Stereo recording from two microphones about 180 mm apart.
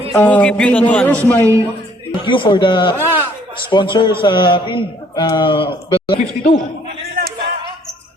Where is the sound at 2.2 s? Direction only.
30° left (ahead or behind).